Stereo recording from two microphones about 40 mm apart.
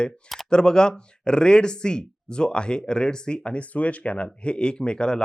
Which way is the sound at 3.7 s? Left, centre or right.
Left.